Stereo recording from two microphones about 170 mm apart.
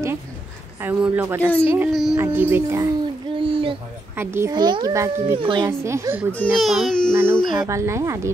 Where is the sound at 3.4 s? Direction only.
30° right (ahead or behind).